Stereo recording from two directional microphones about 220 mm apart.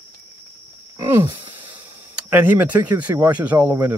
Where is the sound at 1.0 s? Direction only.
15° right (ahead or behind).